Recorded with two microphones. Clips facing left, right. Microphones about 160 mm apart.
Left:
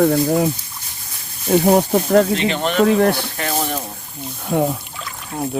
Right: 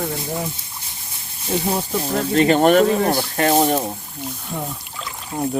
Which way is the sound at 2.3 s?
45° right (ahead or behind).